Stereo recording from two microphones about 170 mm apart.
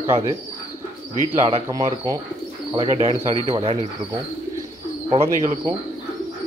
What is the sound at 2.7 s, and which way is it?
Speech, 35° right (ahead or behind).